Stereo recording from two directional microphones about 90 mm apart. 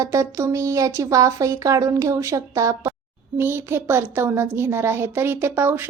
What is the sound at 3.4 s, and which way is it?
A woman's voice, 25° right (ahead or behind).